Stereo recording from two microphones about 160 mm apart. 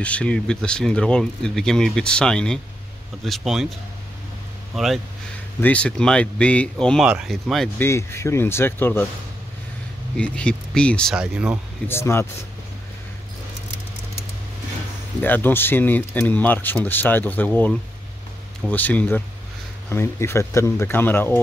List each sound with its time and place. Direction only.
0.0 s speech: 5° left (ahead or behind)
4.7 s speech: centre (ahead or behind)
7.8 s speech: 15° left (ahead or behind)
10.1 s speech: 5° left (ahead or behind)
11.1 s speech: 5° right (ahead or behind)
11.9 s speech: 15° left (ahead or behind)
15.2 s speech: 10° left (ahead or behind)